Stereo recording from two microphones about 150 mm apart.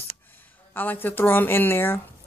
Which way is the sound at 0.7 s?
15° left (ahead or behind).